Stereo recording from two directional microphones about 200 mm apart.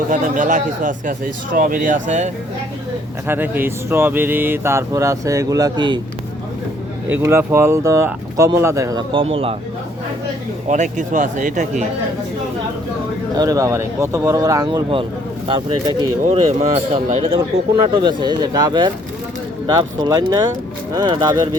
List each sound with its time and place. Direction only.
0.1 s speech: 40° right (ahead or behind)
3.2 s speech: 10° right (ahead or behind)
7.1 s speech: 10° right (ahead or behind); by 9.6 s 30° right (ahead or behind)
10.7 s speech: 40° right (ahead or behind)
13.3 s speech: 20° right (ahead or behind)
16.2 s speech: 35° right (ahead or behind)
17.8 s speech: 20° right (ahead or behind)